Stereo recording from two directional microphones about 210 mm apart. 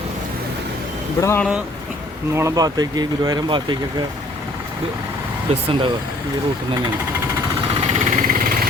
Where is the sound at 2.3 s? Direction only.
15° right (ahead or behind).